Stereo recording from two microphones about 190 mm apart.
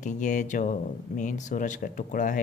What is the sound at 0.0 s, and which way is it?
Speech, 40° left (ahead or behind).